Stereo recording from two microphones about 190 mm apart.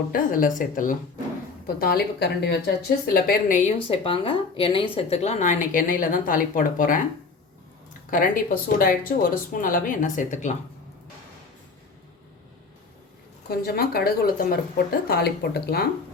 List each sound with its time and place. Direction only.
0.1 s speech: 45° left (ahead or behind)
3.8 s a woman's voice: 30° left (ahead or behind); by 7.0 s 45° left (ahead or behind)
8.1 s speech: 45° left (ahead or behind)
13.5 s speech: 55° left (ahead or behind)